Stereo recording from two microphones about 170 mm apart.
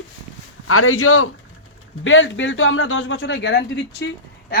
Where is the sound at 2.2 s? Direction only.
90° left.